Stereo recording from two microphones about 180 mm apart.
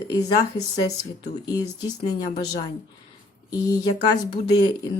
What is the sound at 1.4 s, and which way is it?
Speech, 20° left (ahead or behind).